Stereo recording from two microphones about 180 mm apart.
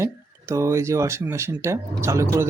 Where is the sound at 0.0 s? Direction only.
15° right (ahead or behind).